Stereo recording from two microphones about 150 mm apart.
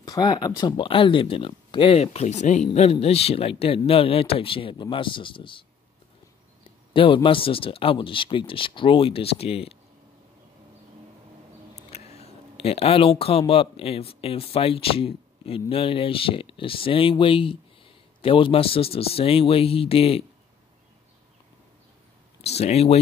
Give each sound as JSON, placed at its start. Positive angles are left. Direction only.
{"t": 0.0, "sound": "speech", "side_deg": 25}
{"t": 6.6, "sound": "a sound", "side_deg": 35}
{"t": 7.2, "sound": "speech", "side_deg": 35}
{"t": 11.7, "sound": "speech", "side_deg": 45}
{"t": 22.4, "sound": "speech", "side_deg": 45}